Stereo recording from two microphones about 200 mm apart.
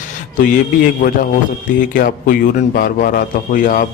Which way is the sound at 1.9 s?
45° left (ahead or behind).